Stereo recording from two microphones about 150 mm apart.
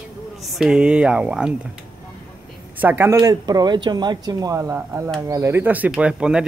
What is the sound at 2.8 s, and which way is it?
Speech, 15° right (ahead or behind).